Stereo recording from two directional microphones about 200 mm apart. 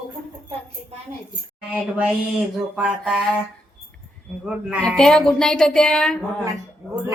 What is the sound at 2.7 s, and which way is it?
Speech, 5° right (ahead or behind).